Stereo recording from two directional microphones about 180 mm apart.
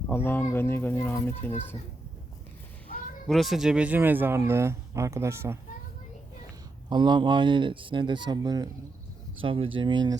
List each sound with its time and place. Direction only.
0.1 s speech: 10° left (ahead or behind)
3.2 s speech: centre (ahead or behind)
6.9 s speech: 25° right (ahead or behind)